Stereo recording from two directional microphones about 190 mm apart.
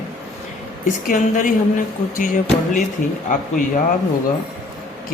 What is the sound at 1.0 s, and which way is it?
Speech, 45° left (ahead or behind).